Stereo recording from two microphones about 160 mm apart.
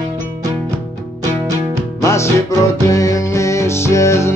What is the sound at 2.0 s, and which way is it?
Music, 15° left (ahead or behind).